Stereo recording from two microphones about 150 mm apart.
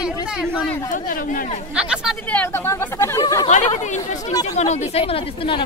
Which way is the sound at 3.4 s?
45° left (ahead or behind).